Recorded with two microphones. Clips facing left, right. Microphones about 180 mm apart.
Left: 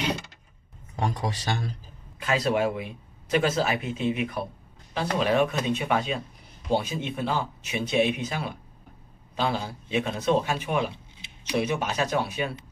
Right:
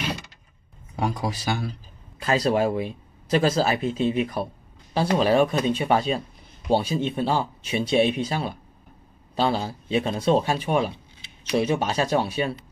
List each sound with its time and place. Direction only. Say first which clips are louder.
0.9 s speech: right 2 dB; 10° right (ahead or behind)
2.1 s a man's voice: right 3 dB; 35° right (ahead or behind)